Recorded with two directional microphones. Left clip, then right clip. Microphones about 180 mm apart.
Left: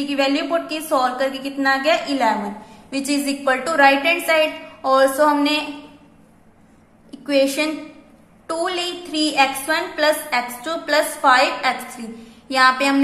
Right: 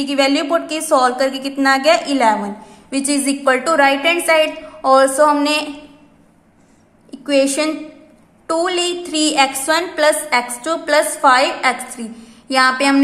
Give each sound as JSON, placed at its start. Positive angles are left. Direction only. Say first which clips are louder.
{"t": 0.0, "sound": "a woman's voice", "louder": "right 4 dB", "side_deg": -30}
{"t": 7.1, "sound": "a woman's voice", "louder": "right 3 dB", "side_deg": -20}